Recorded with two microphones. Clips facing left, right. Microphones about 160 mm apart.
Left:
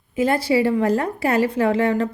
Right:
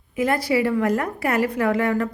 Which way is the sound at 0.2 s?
30° left (ahead or behind).